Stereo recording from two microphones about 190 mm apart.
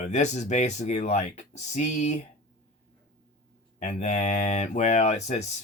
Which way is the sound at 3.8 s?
40° left (ahead or behind).